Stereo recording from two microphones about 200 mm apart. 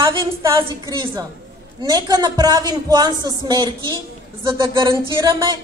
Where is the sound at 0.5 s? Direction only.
20° right (ahead or behind).